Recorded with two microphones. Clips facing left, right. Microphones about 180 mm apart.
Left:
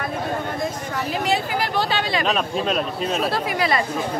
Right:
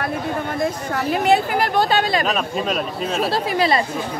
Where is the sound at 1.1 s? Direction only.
55° right (ahead or behind).